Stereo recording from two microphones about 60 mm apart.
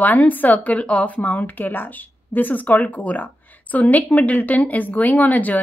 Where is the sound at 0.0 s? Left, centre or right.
Left.